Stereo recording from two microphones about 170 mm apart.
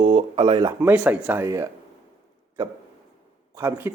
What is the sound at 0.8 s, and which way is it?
Speech, 10° right (ahead or behind).